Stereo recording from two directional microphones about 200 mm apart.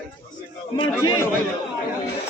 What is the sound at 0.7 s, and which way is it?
Speech, 25° left (ahead or behind).